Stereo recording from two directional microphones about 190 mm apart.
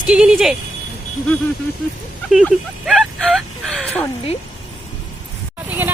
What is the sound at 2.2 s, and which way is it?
Speech, centre (ahead or behind).